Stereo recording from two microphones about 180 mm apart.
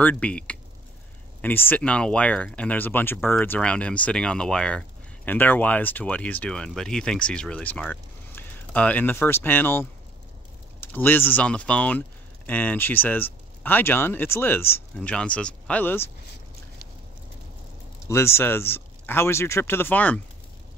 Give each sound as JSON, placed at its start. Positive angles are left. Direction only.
{"t": 0.0, "sound": "speech", "side_deg": 5}
{"t": 18.0, "sound": "speech", "side_deg": 15}